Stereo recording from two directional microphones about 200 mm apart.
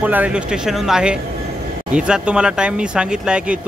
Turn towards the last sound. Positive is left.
turn(degrees=-5)  # may be behind; listen again after turning